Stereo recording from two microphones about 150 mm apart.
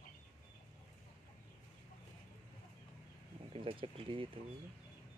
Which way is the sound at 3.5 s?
35° right (ahead or behind).